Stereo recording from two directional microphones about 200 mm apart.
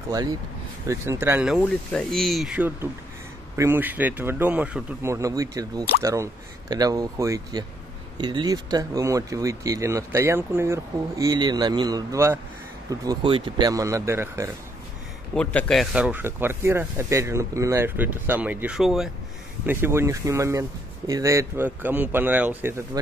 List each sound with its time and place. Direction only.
0.8 s speech: 15° right (ahead or behind)
15.3 s speech: 5° left (ahead or behind)